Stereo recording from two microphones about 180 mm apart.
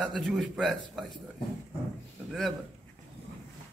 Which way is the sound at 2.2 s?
Centre (ahead or behind).